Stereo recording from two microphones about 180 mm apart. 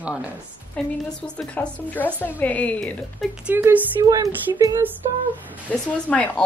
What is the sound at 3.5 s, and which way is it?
Speech, 10° right (ahead or behind).